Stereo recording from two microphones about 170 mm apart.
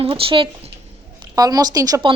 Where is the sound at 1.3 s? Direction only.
20° right (ahead or behind).